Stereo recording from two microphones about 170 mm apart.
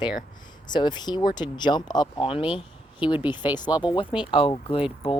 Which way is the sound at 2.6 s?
30° left (ahead or behind).